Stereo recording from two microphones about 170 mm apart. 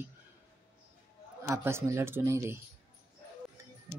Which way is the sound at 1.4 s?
15° right (ahead or behind).